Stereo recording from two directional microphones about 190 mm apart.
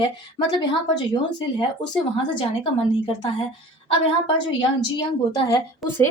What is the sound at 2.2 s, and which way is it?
A woman's voice, 25° left (ahead or behind).